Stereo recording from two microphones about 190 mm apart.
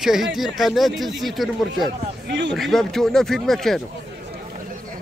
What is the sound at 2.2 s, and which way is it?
Speech, 70° right (ahead or behind).